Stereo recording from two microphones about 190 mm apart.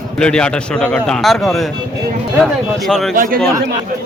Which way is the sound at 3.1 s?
45° right (ahead or behind).